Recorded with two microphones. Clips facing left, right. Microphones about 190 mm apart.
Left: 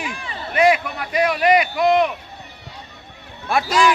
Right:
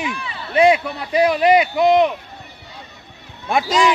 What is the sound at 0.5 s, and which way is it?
A man's voice, 25° right (ahead or behind).